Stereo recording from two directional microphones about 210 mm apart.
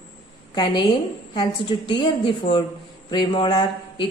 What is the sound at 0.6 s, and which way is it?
A woman's voice, 20° left (ahead or behind).